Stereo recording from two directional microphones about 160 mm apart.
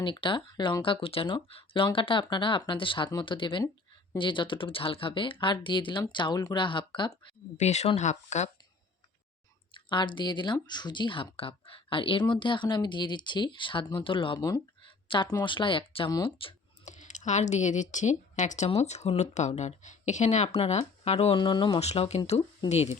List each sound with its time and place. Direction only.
0.0 s speech: 30° left (ahead or behind)
7.5 s speech: 45° left (ahead or behind)
9.7 s speech: 30° left (ahead or behind)
16.8 s speech: 50° left (ahead or behind)
21.3 s speech: 30° left (ahead or behind)
21.8 s speech: 40° left (ahead or behind)